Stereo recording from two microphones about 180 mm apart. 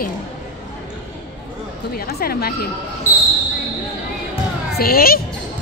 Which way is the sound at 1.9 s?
55° left (ahead or behind).